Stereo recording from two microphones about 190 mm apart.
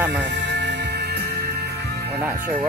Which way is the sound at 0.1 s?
65° right (ahead or behind).